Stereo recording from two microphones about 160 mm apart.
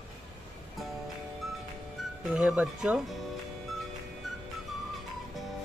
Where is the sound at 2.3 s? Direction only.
5° right (ahead or behind).